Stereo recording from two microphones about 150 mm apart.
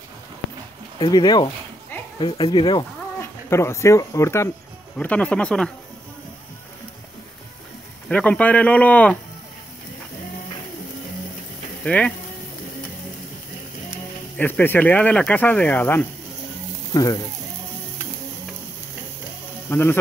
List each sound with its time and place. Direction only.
0.9 s speech: 30° left (ahead or behind)
3.2 s speech: 20° left (ahead or behind)
4.9 s speech: 10° left (ahead or behind)
8.1 s speech: 10° left (ahead or behind)
11.8 s speech: 10° left (ahead or behind)
14.3 s speech: 10° left (ahead or behind)
16.9 s speech: 25° left (ahead or behind)
19.7 s speech: 15° left (ahead or behind)